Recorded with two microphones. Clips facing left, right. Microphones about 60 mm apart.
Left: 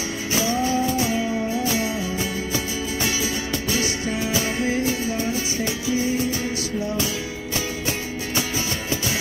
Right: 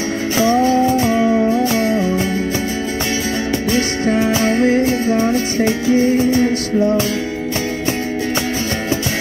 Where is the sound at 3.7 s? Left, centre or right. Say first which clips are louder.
Right 10 dB; right.